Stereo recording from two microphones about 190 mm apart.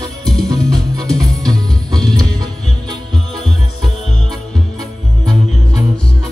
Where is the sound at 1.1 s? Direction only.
20° right (ahead or behind).